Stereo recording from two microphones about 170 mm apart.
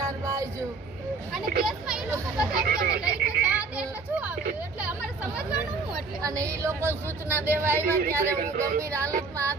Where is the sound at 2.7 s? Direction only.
70° right (ahead or behind).